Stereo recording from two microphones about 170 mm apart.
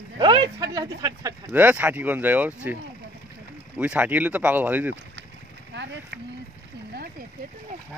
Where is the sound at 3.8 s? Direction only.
10° right (ahead or behind).